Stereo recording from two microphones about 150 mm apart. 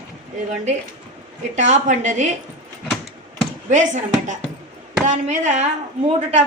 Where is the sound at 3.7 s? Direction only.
55° right (ahead or behind).